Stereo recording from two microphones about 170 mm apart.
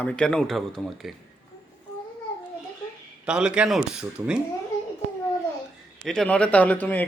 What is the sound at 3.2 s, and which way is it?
Speech, 5° right (ahead or behind).